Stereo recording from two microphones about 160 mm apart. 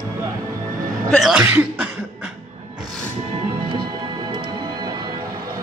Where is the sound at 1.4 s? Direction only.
15° right (ahead or behind).